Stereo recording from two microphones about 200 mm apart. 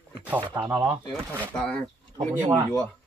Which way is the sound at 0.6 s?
10° right (ahead or behind).